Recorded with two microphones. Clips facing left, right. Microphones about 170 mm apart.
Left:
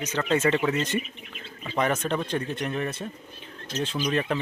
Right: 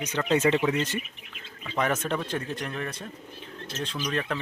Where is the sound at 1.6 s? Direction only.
Centre (ahead or behind).